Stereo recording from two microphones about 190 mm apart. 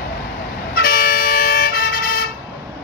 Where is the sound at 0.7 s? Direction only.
50° left (ahead or behind).